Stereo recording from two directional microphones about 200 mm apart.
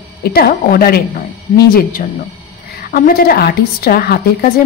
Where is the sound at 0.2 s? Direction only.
50° left (ahead or behind).